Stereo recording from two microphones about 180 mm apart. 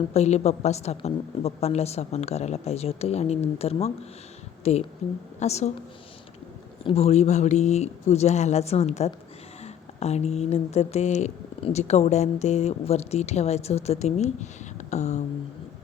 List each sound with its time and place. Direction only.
0.1 s speech: 35° left (ahead or behind)
6.8 s speech: 35° left (ahead or behind)